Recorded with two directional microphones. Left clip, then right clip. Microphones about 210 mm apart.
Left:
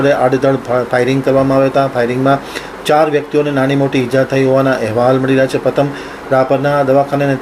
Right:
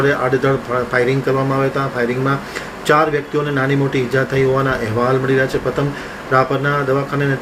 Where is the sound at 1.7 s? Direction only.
15° left (ahead or behind).